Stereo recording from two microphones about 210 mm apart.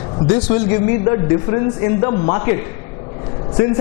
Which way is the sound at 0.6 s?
20° left (ahead or behind).